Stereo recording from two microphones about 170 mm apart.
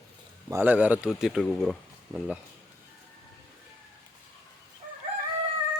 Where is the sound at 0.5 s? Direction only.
10° right (ahead or behind).